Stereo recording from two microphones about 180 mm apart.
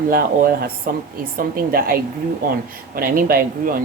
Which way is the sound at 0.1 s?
55° right (ahead or behind).